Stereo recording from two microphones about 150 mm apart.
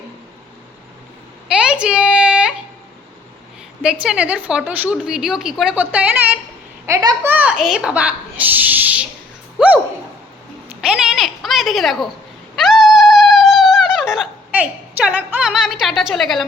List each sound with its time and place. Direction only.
1.5 s a sound: 5° right (ahead or behind)
4.0 s a woman's voice: 10° right (ahead or behind)
6.8 s a child's voice: 20° right (ahead or behind)
7.3 s a woman's voice: 10° right (ahead or behind)
9.6 s a sound: 10° right (ahead or behind)
12.5 s cat: centre (ahead or behind)